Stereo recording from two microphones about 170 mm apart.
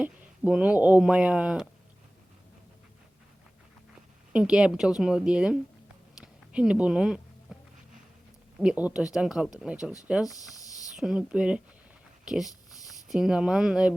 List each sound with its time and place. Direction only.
0.0 s speech: 10° right (ahead or behind)
4.3 s speech: 5° right (ahead or behind)
7.5 s music: 5° right (ahead or behind)
8.5 s speech: 5° right (ahead or behind)
10.5 s a sound: 20° left (ahead or behind)
10.9 s speech: 5° right (ahead or behind)